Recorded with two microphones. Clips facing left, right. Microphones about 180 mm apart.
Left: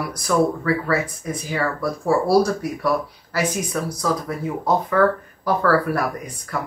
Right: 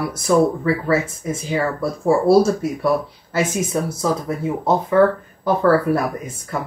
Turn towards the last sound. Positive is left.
turn(degrees=-25)  # may be behind; listen again after turning